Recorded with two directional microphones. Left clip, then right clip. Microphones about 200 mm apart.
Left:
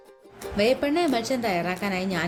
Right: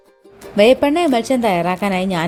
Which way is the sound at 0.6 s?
40° right (ahead or behind).